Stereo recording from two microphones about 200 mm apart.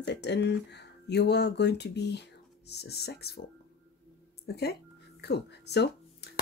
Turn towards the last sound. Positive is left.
turn(degrees=55)  # may be behind; listen again after turning